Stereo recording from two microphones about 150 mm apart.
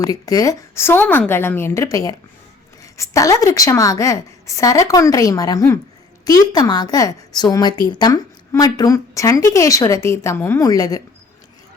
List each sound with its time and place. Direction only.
0.0 s a woman's voice: 25° left (ahead or behind)